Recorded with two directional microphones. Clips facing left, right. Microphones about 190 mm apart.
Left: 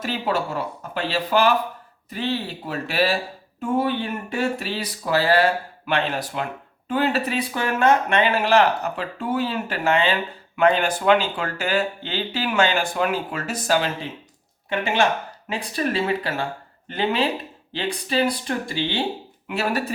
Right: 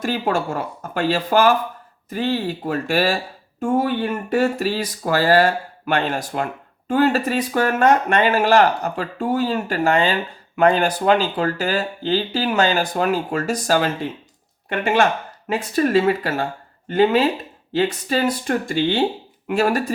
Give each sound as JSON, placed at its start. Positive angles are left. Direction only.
{"t": 0.0, "sound": "speech", "side_deg": -50}
{"t": 15.4, "sound": "speech", "side_deg": -45}